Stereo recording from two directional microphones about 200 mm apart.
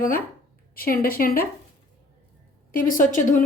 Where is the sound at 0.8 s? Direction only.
50° left (ahead or behind).